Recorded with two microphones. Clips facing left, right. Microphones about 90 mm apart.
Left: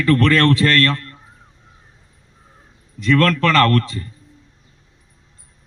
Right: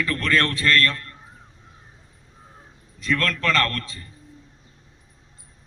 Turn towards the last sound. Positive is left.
turn(degrees=65)  # may be behind; listen again after turning